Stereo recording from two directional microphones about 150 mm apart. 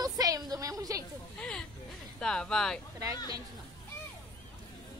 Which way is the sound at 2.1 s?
5° left (ahead or behind).